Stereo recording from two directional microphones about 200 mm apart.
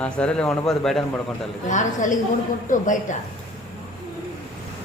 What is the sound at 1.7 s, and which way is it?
Speech, 40° left (ahead or behind).